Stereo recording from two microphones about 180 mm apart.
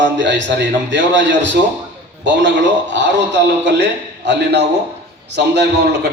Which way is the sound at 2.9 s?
75° right (ahead or behind).